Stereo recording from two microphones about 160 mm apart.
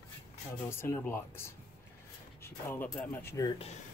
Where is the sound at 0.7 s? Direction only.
15° left (ahead or behind).